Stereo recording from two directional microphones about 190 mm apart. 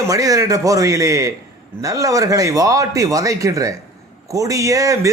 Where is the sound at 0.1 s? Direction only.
20° right (ahead or behind).